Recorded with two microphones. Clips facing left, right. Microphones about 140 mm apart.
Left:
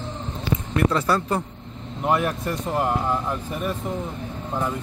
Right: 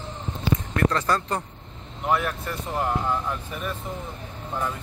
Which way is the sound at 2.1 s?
40° left (ahead or behind).